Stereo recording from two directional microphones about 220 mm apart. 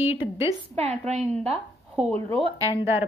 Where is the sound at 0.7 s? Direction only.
30° right (ahead or behind).